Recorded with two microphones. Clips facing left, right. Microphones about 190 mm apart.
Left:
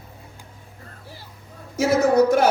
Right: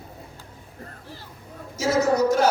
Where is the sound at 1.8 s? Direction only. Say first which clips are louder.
Left 4 dB; 55° left (ahead or behind).